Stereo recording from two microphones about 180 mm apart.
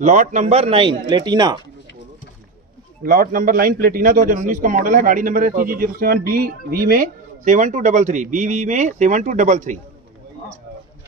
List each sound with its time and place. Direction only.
0.0 s a man's voice: 45° right (ahead or behind); by 1.6 s 20° right (ahead or behind)
3.0 s a man's voice: 50° right (ahead or behind)